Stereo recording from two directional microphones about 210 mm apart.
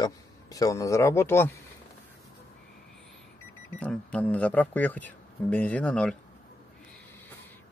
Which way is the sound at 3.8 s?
5° left (ahead or behind).